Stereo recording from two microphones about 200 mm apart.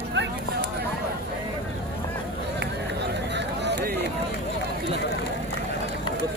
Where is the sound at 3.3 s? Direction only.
60° right (ahead or behind).